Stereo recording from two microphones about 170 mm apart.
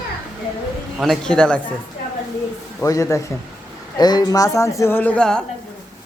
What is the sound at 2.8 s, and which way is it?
Speech, 20° left (ahead or behind).